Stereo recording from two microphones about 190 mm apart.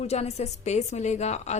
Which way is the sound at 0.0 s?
35° left (ahead or behind).